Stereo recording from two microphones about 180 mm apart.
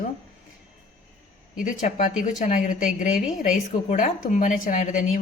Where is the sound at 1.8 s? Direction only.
45° left (ahead or behind).